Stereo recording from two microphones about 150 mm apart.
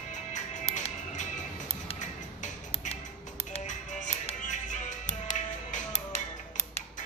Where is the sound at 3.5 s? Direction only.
50° left (ahead or behind).